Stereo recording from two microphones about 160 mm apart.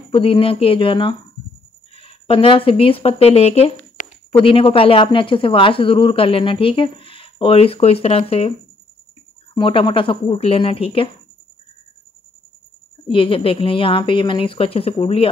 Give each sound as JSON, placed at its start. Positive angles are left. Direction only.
{"t": 0.1, "sound": "speech", "side_deg": 35}
{"t": 13.1, "sound": "speech", "side_deg": 35}